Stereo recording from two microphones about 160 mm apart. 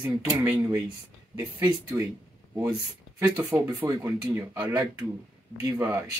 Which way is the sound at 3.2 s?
20° right (ahead or behind).